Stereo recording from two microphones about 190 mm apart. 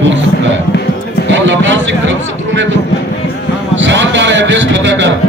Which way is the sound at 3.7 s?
75° right (ahead or behind).